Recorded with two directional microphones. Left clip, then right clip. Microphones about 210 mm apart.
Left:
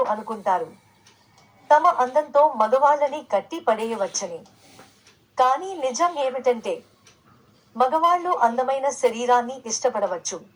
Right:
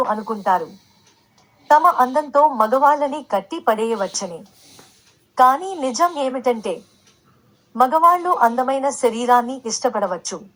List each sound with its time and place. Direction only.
0.0 s a woman's voice: 40° right (ahead or behind)
1.6 s a woman's voice: 40° right (ahead or behind)
5.3 s a woman's voice: 40° right (ahead or behind)
7.8 s a woman's voice: 40° right (ahead or behind)